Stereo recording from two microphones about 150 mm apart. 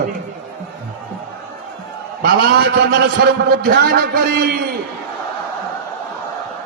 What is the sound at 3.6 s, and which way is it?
A man's voice, 90° right.